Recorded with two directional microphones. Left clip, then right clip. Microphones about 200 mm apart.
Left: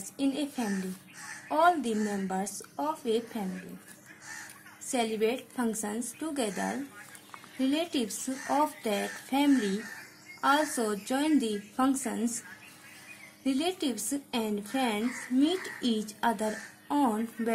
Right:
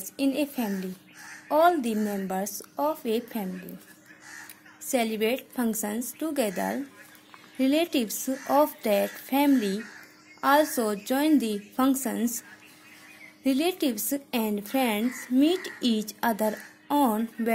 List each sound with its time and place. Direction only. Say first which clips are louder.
0.2 s speech: right 4 dB; 40° right (ahead or behind)
4.9 s speech: right 3 dB; 40° right (ahead or behind)